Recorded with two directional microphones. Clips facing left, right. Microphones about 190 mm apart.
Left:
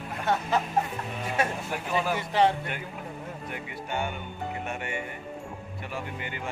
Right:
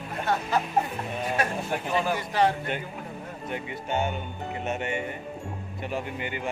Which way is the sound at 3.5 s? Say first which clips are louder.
Right 6 dB; 20° right (ahead or behind).